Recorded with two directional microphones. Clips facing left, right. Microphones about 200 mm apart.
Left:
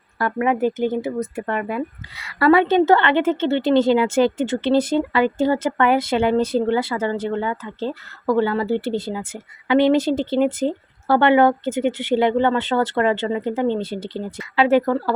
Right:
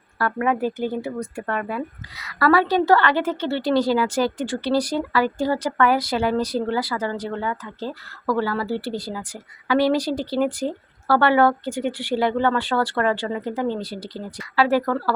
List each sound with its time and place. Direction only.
0.2 s speech: 15° left (ahead or behind)
2.1 s a woman's voice: 25° left (ahead or behind)